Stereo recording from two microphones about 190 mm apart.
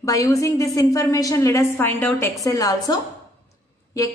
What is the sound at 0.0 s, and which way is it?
A woman's voice, 15° left (ahead or behind).